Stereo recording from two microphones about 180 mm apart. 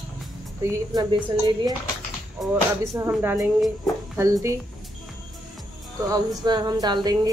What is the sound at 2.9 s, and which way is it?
Speech, 15° right (ahead or behind).